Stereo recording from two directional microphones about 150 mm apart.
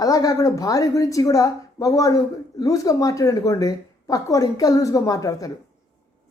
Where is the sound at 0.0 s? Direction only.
25° left (ahead or behind).